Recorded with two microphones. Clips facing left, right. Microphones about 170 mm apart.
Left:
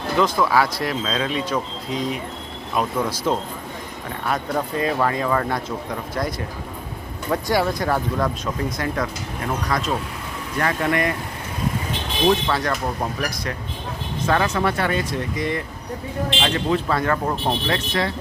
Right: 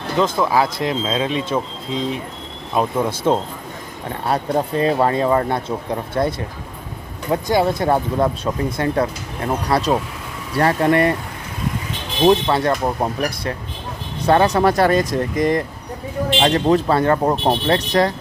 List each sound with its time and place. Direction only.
0.2 s speech: 20° right (ahead or behind)
12.3 s speech: 25° right (ahead or behind)